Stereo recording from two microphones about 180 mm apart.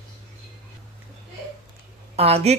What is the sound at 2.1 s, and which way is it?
Speech, 35° right (ahead or behind).